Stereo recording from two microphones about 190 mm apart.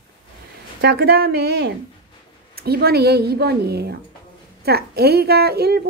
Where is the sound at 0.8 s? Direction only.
55° right (ahead or behind).